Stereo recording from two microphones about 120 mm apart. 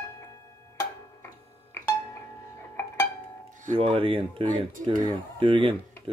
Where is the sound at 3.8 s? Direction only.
50° right (ahead or behind).